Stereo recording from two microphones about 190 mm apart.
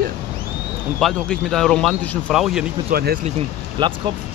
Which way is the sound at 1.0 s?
Centre (ahead or behind).